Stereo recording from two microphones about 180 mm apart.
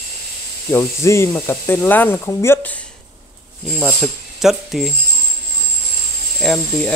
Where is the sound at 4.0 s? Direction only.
Centre (ahead or behind).